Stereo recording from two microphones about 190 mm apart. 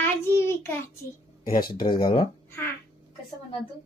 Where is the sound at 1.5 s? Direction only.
50° left (ahead or behind).